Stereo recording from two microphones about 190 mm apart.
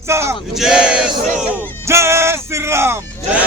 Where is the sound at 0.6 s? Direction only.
5° right (ahead or behind).